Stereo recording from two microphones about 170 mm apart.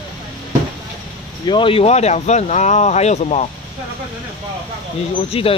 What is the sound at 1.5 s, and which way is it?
Speech, 30° left (ahead or behind).